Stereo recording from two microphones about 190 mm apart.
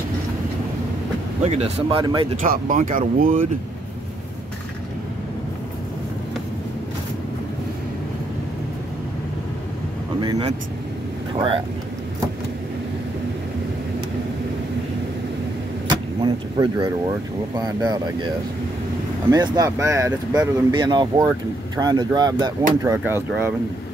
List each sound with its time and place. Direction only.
1.4 s speech: 35° right (ahead or behind)
2.4 s speech: 45° right (ahead or behind)
11.3 s speech: 30° right (ahead or behind)
15.9 s speech: 25° right (ahead or behind)
19.3 s speech: 20° right (ahead or behind)
22.8 s speech: 10° right (ahead or behind)